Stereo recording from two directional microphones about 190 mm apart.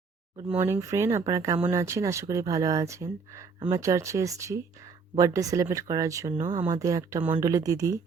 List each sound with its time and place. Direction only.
0.5 s speech: 15° right (ahead or behind)